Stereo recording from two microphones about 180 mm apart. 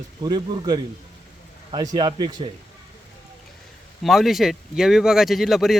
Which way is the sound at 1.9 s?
25° right (ahead or behind).